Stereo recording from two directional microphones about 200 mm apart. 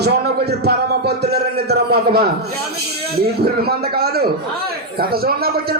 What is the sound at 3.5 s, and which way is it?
A man's voice, 50° right (ahead or behind).